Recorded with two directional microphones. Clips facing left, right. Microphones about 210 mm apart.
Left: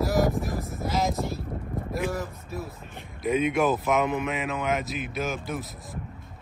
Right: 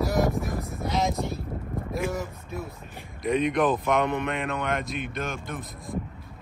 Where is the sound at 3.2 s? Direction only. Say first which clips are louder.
Even; 5° left (ahead or behind).